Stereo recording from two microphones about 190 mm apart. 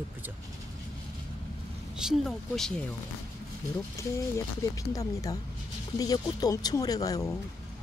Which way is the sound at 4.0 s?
15° left (ahead or behind).